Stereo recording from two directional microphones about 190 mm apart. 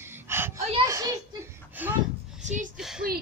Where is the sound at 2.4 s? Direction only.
40° right (ahead or behind).